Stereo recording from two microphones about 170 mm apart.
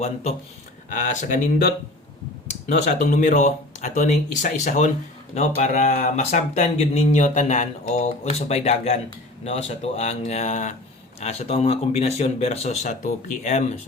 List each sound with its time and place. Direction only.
0.9 s speech: 50° left (ahead or behind)
2.6 s speech: 50° left (ahead or behind)